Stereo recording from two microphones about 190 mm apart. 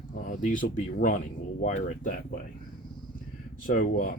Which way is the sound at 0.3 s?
45° left (ahead or behind).